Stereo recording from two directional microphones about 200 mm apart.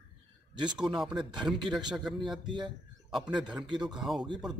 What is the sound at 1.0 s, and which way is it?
Speech, 25° right (ahead or behind).